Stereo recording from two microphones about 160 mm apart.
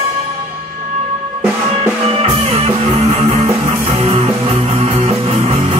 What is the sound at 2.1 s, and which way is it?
Music, 40° right (ahead or behind).